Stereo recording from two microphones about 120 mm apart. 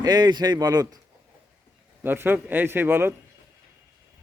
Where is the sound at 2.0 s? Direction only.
15° right (ahead or behind).